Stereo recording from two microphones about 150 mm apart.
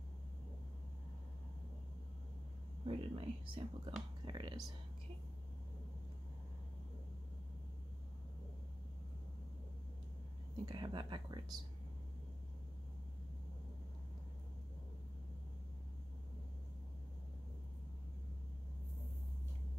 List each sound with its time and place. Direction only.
2.8 s speech: 35° right (ahead or behind)
10.6 s speech: 30° right (ahead or behind)